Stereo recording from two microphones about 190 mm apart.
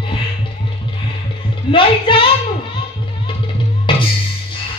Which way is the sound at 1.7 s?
25° left (ahead or behind).